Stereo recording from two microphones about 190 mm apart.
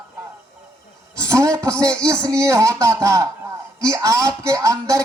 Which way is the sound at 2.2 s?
15° right (ahead or behind).